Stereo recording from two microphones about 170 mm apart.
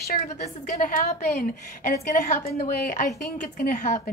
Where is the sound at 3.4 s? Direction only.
55° left (ahead or behind).